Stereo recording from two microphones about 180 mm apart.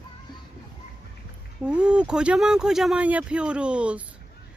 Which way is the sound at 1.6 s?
5° right (ahead or behind).